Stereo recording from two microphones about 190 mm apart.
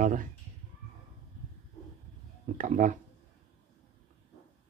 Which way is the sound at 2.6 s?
45° right (ahead or behind).